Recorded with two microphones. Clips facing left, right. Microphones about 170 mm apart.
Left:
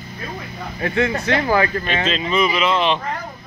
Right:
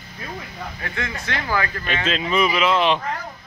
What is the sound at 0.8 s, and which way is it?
Speech, 20° left (ahead or behind).